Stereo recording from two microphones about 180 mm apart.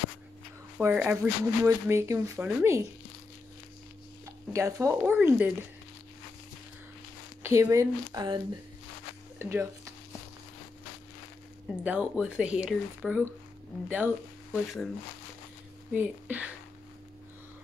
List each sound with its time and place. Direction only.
0.7 s speech: 10° right (ahead or behind)
4.5 s speech: 15° right (ahead or behind)
7.4 s speech: 15° right (ahead or behind)
9.4 s speech: 15° right (ahead or behind)
11.8 s speech: 10° right (ahead or behind)
15.9 s speech: 10° right (ahead or behind)